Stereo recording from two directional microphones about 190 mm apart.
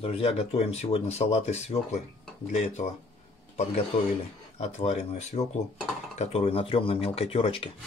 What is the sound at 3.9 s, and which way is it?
Speech, 35° left (ahead or behind).